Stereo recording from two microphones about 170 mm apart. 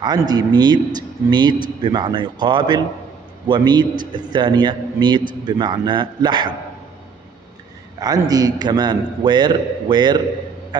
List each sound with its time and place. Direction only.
0.3 s a man's voice: 25° right (ahead or behind)
8.0 s a man's voice: 20° right (ahead or behind)